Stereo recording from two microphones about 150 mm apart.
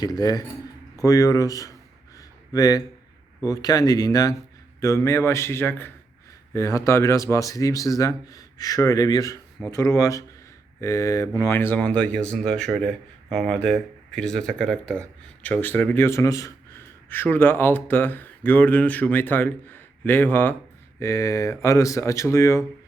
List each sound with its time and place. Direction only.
0.0 s speech: 25° left (ahead or behind)
2.1 s a sound: 25° left (ahead or behind)
3.4 s a man's voice: 25° left (ahead or behind)